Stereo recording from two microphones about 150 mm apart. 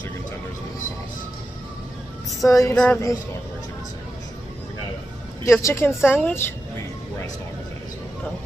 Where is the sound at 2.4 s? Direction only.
20° left (ahead or behind).